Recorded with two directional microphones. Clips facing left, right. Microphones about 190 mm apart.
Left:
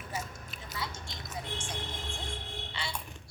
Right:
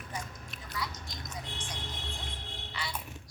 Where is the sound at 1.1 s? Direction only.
Centre (ahead or behind).